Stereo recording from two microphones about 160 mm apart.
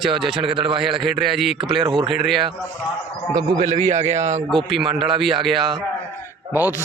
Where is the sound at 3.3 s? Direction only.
25° right (ahead or behind).